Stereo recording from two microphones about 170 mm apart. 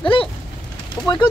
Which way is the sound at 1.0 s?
25° left (ahead or behind).